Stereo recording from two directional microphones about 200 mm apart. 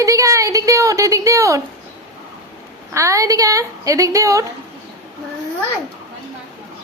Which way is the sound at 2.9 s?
15° right (ahead or behind).